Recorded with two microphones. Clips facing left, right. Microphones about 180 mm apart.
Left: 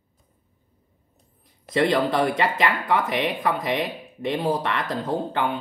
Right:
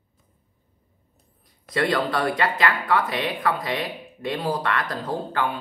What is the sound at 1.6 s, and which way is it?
Speech, 20° left (ahead or behind).